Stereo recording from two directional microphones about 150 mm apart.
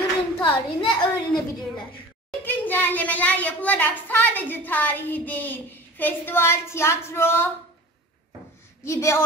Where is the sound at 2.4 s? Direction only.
10° left (ahead or behind).